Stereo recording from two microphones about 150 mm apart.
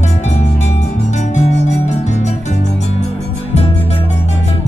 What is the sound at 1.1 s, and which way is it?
Music, 50° left (ahead or behind).